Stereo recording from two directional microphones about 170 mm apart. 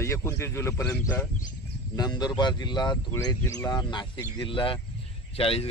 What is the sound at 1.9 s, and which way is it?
Speech, 25° left (ahead or behind).